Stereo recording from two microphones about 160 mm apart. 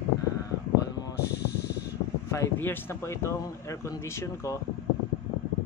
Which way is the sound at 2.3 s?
15° left (ahead or behind).